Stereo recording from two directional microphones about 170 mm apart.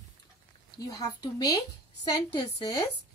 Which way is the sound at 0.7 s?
20° left (ahead or behind).